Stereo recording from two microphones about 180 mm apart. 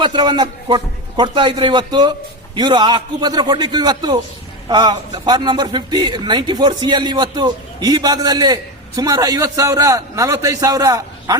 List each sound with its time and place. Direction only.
0.0 s speech: 25° right (ahead or behind)